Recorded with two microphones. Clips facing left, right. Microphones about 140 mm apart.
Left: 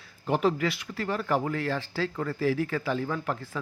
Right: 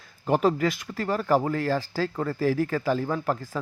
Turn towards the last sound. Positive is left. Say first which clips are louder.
# right 3 dB
turn(degrees=-35)  # may be behind; listen again after turning